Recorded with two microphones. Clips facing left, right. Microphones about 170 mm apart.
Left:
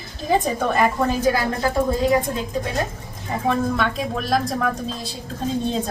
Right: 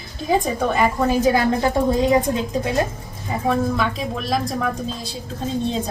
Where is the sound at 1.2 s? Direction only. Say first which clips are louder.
Right 3 dB; 20° right (ahead or behind).